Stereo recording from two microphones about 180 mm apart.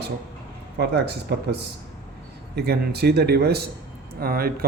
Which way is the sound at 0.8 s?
65° right (ahead or behind).